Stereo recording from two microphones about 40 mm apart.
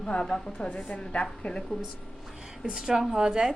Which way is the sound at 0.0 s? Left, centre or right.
Left.